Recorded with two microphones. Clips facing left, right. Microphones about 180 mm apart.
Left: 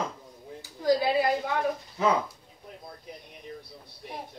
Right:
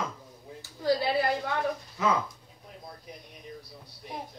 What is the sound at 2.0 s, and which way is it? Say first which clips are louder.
Speech: left 2 dB; 30° left (ahead or behind).